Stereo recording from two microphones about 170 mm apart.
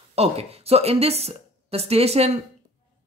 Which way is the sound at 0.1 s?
35° right (ahead or behind).